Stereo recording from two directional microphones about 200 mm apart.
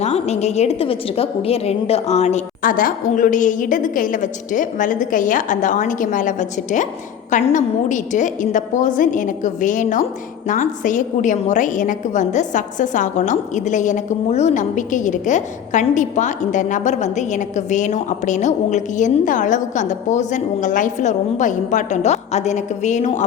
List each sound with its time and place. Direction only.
0.0 s a woman's voice: 35° left (ahead or behind)